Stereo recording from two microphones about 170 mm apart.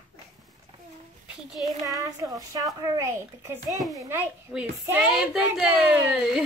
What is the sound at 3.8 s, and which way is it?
Speech, centre (ahead or behind).